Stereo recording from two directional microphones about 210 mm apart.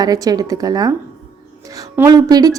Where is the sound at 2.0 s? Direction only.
15° right (ahead or behind).